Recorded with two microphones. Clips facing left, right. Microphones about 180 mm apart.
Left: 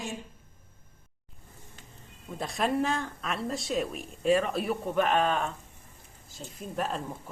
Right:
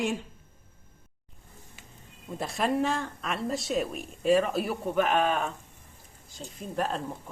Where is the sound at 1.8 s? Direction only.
10° right (ahead or behind).